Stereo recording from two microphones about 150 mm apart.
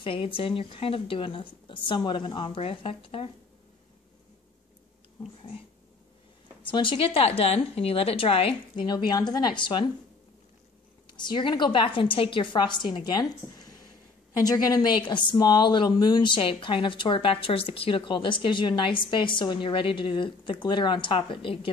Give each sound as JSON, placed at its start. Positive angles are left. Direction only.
{"t": 0.0, "sound": "a woman's voice", "side_deg": 35}
{"t": 6.6, "sound": "a woman's voice", "side_deg": 35}
{"t": 11.1, "sound": "a woman's voice", "side_deg": 30}